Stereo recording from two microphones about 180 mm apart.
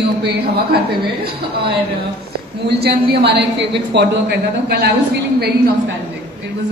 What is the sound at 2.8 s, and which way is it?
A woman's voice, 65° right (ahead or behind).